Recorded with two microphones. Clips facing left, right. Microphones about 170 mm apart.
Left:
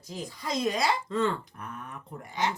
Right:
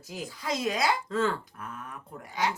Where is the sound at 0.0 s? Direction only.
5° right (ahead or behind).